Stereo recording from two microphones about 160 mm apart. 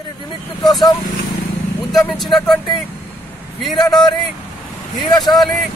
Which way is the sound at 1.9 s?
Centre (ahead or behind).